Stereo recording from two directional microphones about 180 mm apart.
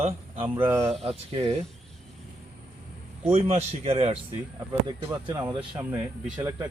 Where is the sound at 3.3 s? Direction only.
35° right (ahead or behind).